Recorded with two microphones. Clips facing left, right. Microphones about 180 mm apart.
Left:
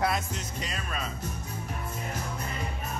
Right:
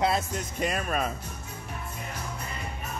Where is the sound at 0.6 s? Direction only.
55° right (ahead or behind).